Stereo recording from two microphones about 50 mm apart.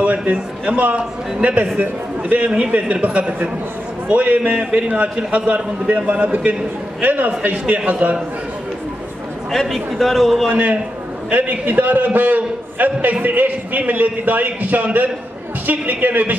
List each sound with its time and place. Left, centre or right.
0.0 s a man's voice: right
4.6 s a man's voice: centre; by 8.2 s right
9.5 s a man's voice: centre
10.5 s a man's voice: right